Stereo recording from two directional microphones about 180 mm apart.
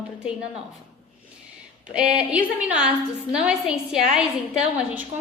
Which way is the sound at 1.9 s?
5° right (ahead or behind).